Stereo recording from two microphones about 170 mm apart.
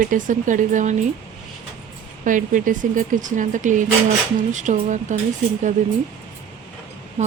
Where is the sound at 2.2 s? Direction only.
50° right (ahead or behind).